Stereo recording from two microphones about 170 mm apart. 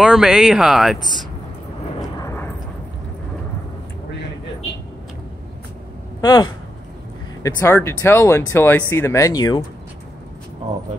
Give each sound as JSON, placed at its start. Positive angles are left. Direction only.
{"t": 0.0, "sound": "speech", "side_deg": -5}
{"t": 2.1, "sound": "eruption", "side_deg": 15}
{"t": 6.2, "sound": "speech", "side_deg": 25}